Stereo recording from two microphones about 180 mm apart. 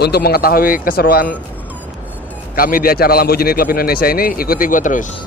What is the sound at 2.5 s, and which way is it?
Speech, 55° left (ahead or behind).